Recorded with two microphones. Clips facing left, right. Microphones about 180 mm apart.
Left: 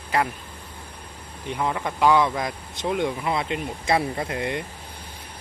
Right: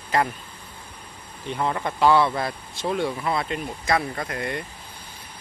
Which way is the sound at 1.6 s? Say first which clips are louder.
Right 1 dB; 5° left (ahead or behind).